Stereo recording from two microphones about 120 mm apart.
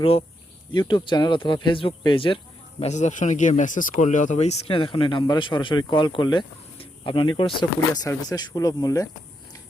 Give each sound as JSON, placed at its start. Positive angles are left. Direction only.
{"t": 0.0, "sound": "speech", "side_deg": 50}
{"t": 0.7, "sound": "speech", "side_deg": 40}
{"t": 2.8, "sound": "speech", "side_deg": 75}
{"t": 8.0, "sound": "speech", "side_deg": 30}